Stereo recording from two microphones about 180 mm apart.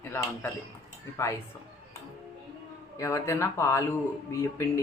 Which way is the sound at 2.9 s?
15° left (ahead or behind).